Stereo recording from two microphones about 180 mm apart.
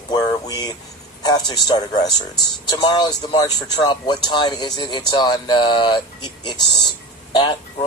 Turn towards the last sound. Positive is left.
turn(degrees=25)  # may be behind; listen again after turning